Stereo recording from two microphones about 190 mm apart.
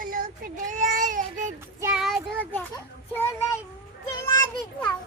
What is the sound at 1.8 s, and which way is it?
Speech, 5° right (ahead or behind).